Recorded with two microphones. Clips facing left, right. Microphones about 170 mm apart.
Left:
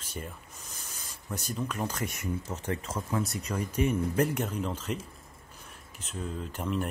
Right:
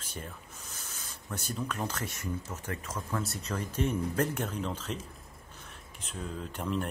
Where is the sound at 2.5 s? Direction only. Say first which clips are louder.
Left 4 dB; 30° left (ahead or behind).